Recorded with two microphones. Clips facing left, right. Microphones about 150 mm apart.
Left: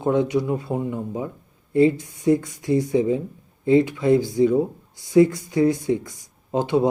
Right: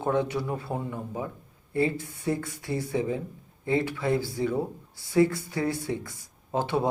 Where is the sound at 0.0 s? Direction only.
15° left (ahead or behind).